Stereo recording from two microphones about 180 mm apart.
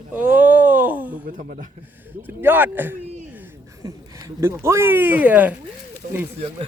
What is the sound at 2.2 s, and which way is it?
Speech, 10° right (ahead or behind).